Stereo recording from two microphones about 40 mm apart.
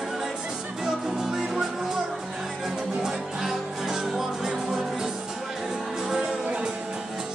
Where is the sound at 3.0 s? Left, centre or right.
Centre.